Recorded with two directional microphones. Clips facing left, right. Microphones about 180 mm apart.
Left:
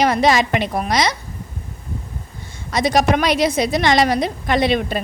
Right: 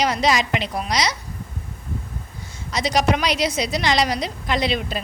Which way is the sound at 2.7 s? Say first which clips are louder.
Left 4 dB; 50° left (ahead or behind).